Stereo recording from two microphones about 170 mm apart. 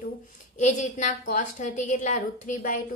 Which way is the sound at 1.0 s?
50° left (ahead or behind).